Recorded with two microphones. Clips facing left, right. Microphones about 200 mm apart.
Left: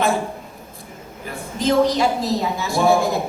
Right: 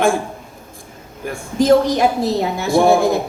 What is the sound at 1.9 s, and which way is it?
Speech, 55° right (ahead or behind).